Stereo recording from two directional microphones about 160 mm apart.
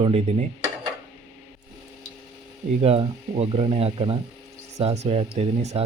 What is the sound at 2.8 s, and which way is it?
Speech, 40° right (ahead or behind).